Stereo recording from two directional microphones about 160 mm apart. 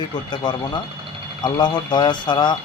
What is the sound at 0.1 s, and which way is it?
Speech, 25° left (ahead or behind).